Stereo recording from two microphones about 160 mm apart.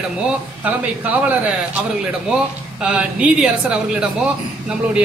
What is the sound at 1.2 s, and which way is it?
Speech, 10° right (ahead or behind).